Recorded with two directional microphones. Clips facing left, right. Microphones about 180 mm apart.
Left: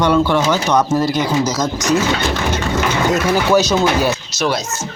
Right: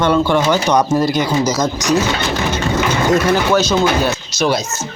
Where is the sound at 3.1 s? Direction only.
5° left (ahead or behind).